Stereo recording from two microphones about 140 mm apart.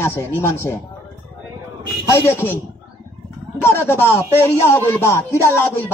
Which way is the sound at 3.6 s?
15° left (ahead or behind).